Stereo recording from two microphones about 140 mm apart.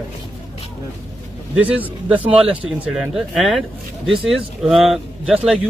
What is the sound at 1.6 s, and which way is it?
Speech, 10° right (ahead or behind).